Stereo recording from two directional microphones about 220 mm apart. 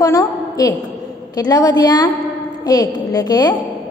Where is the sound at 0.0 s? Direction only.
15° left (ahead or behind).